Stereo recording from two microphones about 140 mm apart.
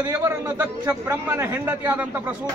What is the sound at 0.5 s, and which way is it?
A man's voice, 15° right (ahead or behind).